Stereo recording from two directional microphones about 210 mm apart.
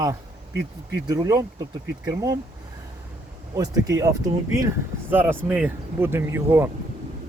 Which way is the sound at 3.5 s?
15° right (ahead or behind).